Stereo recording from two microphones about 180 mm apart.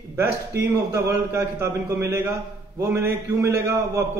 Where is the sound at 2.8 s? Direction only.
15° right (ahead or behind).